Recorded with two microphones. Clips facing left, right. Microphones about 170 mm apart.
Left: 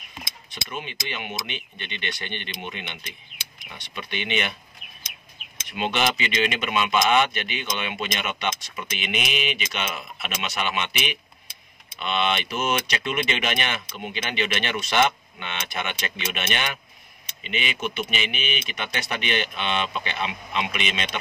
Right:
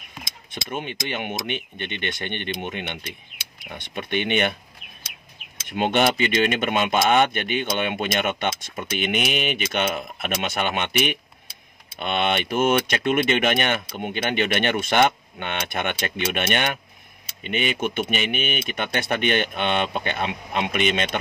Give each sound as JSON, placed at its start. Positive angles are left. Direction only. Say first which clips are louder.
{"t": 0.5, "sound": "speech", "louder": "right 5 dB", "side_deg": -50}
{"t": 5.7, "sound": "speech", "louder": "right 5 dB", "side_deg": -50}